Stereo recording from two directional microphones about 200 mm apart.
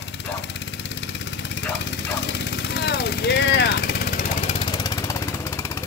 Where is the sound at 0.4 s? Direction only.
60° left (ahead or behind).